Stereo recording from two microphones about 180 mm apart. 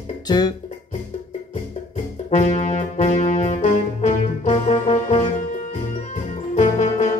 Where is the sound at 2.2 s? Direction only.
45° left (ahead or behind).